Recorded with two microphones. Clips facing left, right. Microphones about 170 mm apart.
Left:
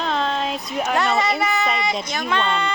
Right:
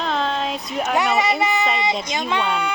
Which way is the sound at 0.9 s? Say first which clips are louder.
Right 1 dB; 15° right (ahead or behind).